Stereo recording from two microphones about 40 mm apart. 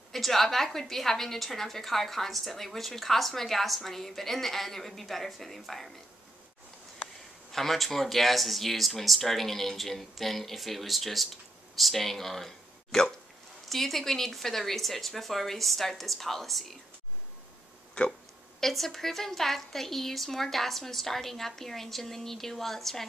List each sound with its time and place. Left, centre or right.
0.1 s a woman's voice: centre
7.5 s speech: centre
18.0 s speech: left
18.6 s a woman's voice: centre